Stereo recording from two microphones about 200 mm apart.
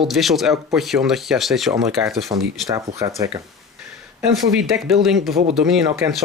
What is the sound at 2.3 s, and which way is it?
Speech, 20° right (ahead or behind).